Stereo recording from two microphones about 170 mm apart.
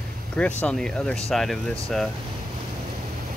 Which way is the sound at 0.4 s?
10° left (ahead or behind).